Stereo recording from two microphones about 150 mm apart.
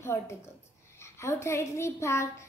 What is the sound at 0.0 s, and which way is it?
A woman's voice, 15° left (ahead or behind).